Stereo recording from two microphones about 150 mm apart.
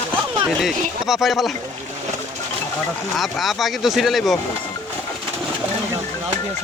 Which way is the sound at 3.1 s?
Centre (ahead or behind).